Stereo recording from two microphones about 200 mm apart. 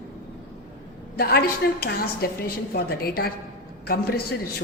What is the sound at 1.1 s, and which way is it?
A woman's voice, 50° left (ahead or behind).